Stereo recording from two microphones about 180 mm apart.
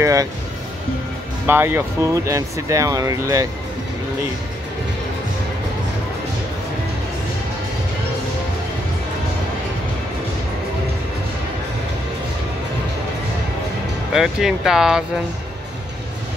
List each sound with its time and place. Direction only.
0.0 s speech: 20° right (ahead or behind)
1.5 s speech: 10° right (ahead or behind)
14.1 s speech: centre (ahead or behind)